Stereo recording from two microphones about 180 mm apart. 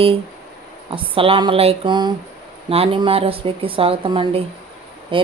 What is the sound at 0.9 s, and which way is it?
A woman's voice, 30° right (ahead or behind).